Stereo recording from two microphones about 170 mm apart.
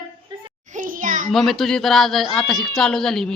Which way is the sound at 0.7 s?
50° right (ahead or behind).